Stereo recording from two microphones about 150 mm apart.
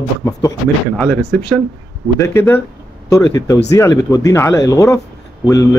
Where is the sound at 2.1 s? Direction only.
20° left (ahead or behind).